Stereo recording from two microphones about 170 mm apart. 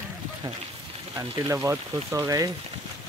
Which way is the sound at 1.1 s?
15° right (ahead or behind).